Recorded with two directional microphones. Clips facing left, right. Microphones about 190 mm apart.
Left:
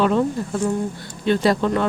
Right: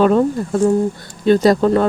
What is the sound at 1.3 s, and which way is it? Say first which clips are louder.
Speech: right 6 dB; 40° right (ahead or behind).